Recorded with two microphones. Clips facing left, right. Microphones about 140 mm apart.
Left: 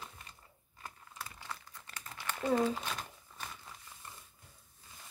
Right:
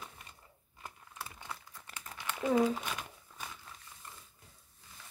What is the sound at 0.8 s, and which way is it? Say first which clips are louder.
Computer keyboard: right 1 dB; 20° right (ahead or behind).